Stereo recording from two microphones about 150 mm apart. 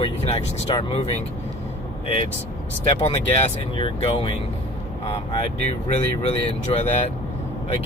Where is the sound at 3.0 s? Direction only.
40° left (ahead or behind).